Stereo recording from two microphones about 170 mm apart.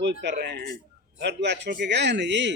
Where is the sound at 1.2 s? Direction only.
90° right.